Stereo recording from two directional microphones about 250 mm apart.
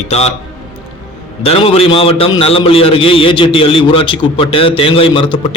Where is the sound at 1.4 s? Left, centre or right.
Left.